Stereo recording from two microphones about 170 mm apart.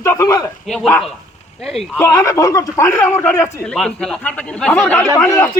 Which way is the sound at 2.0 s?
15° left (ahead or behind).